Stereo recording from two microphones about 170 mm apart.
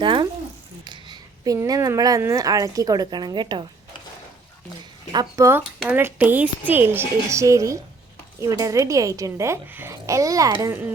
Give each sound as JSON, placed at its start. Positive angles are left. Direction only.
{"t": 0.0, "sound": "a woman's voice", "side_deg": -30}
{"t": 5.1, "sound": "a woman's voice", "side_deg": -15}